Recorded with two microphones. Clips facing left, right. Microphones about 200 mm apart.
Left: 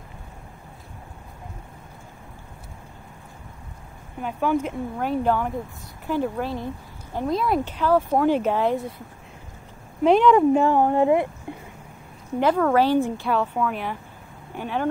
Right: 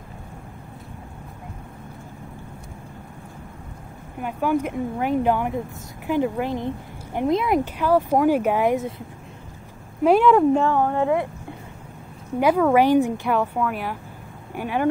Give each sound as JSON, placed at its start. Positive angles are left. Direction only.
{"t": 4.2, "sound": "speech", "side_deg": -10}
{"t": 10.0, "sound": "speech", "side_deg": -5}
{"t": 10.5, "sound": "speech", "side_deg": 15}
{"t": 12.4, "sound": "speech", "side_deg": -10}